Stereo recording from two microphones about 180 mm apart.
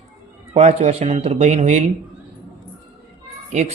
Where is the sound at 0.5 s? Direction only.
40° right (ahead or behind).